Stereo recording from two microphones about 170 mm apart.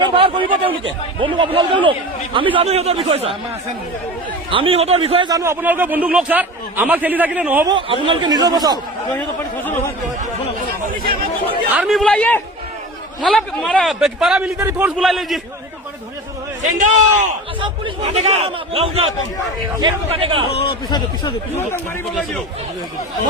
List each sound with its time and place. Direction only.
0.1 s speech: 30° right (ahead or behind)
4.5 s speech: 35° right (ahead or behind)
5.3 s a man's voice: 15° right (ahead or behind)
7.7 s speech: 30° right (ahead or behind)
9.1 s speech: 10° left (ahead or behind)
11.7 s chatter: 10° right (ahead or behind)
11.9 s speech: 5° left (ahead or behind)
14.6 s a man's voice: 15° right (ahead or behind)
14.9 s speech: centre (ahead or behind)
16.7 s a man's voice: 45° right (ahead or behind)
17.6 s speech: 35° right (ahead or behind)
20.5 s speech: 35° left (ahead or behind)